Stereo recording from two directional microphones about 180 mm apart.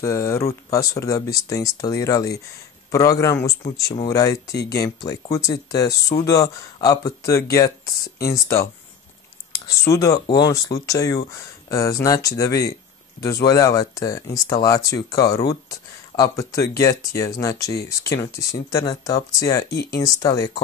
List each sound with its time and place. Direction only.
0.0 s speech: 15° left (ahead or behind)
9.8 s speech: 20° left (ahead or behind)
19.7 s speech: 60° left (ahead or behind)
20.2 s speech: 20° left (ahead or behind)